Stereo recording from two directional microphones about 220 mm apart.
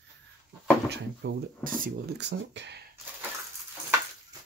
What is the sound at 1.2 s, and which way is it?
Speech, 50° right (ahead or behind).